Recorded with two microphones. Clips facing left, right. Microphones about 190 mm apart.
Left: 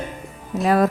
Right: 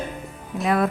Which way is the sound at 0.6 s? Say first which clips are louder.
Left 4 dB; 35° left (ahead or behind).